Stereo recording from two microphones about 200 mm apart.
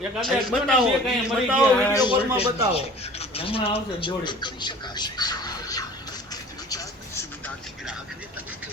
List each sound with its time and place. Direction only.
0.2 s a man's voice: centre (ahead or behind)
1.9 s speech: 20° left (ahead or behind)
6.3 s vehicle: 20° left (ahead or behind)